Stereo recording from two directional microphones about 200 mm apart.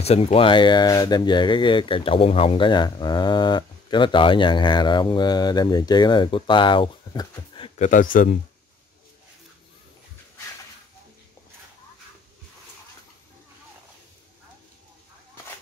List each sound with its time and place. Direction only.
0.0 s speech: 30° left (ahead or behind)
7.8 s speech: 40° left (ahead or behind)